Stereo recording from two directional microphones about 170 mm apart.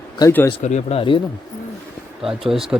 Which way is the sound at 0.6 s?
40° left (ahead or behind).